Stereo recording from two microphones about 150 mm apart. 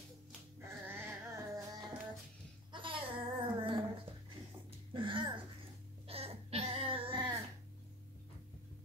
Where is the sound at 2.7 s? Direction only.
35° right (ahead or behind).